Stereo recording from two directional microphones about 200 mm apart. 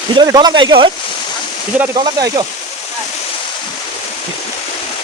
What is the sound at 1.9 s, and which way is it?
Speech, 20° right (ahead or behind).